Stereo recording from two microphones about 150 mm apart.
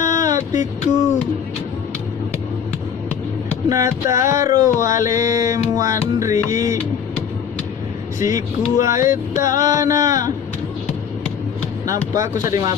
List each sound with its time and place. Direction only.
0.0 s music: 20° right (ahead or behind)
3.6 s music: 20° right (ahead or behind)
4.6 s music: 60° left (ahead or behind)
4.8 s music: 20° right (ahead or behind)
8.2 s music: 20° right (ahead or behind)
11.8 s music: 20° right (ahead or behind)